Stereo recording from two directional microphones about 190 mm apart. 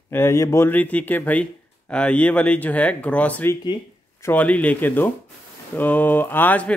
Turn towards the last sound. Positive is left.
turn(degrees=10)  # may be behind; listen again after turning